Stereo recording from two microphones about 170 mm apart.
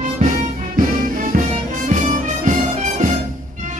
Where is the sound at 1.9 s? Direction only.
45° right (ahead or behind).